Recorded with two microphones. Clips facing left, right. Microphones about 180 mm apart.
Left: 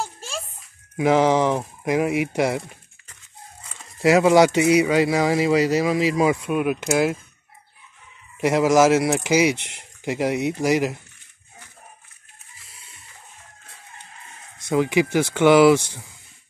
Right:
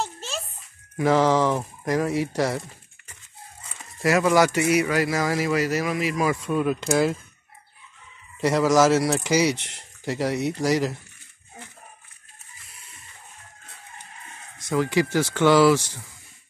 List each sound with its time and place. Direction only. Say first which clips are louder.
0.9 s speech: left 2 dB; 15° left (ahead or behind)
4.0 s speech: left 4 dB; 25° left (ahead or behind)
8.4 s speech: left 2 dB; 15° left (ahead or behind)
14.7 s speech: left 3 dB; 15° left (ahead or behind)